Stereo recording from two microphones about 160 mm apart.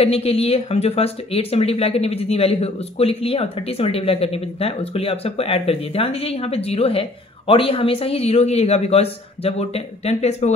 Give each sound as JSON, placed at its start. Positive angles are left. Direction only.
{"t": 0.0, "sound": "speech", "side_deg": 40}